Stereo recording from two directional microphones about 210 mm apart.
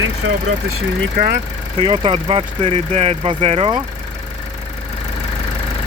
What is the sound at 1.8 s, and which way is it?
Speech, 25° right (ahead or behind).